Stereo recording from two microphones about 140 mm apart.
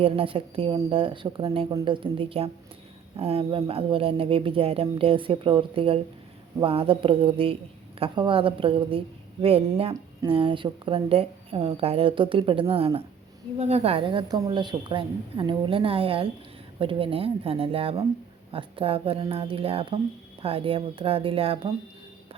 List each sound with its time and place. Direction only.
0.0 s a woman's voice: 40° right (ahead or behind)